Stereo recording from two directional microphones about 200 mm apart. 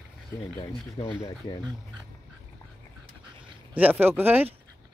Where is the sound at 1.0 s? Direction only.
25° left (ahead or behind).